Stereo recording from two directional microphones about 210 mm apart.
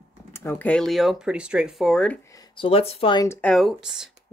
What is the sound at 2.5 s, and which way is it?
Speech, 25° left (ahead or behind).